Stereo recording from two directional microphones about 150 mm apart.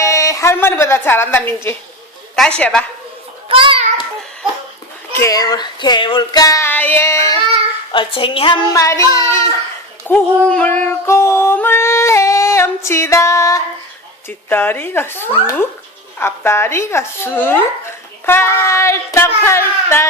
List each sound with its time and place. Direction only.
0.0 s a woman's voice: 20° left (ahead or behind)
3.5 s a child's voice: 35° right (ahead or behind)
5.1 s child singing: 20° left (ahead or behind)
7.9 s child singing: 35° left (ahead or behind); by 9.5 s 20° left (ahead or behind)
10.1 s female singing: 10° left (ahead or behind)
14.3 s speech: 15° left (ahead or behind)